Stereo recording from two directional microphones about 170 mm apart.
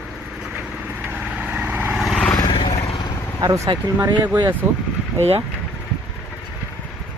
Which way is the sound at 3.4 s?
20° right (ahead or behind).